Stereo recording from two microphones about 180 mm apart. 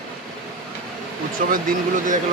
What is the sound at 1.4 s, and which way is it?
Speech, 45° right (ahead or behind).